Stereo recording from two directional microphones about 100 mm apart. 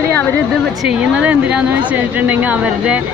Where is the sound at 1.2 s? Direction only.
15° right (ahead or behind).